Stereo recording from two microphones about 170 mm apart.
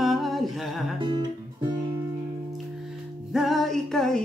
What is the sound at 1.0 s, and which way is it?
Music, 30° right (ahead or behind).